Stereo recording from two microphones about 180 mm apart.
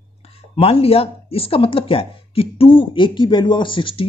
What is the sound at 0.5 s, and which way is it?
Speech, 30° left (ahead or behind).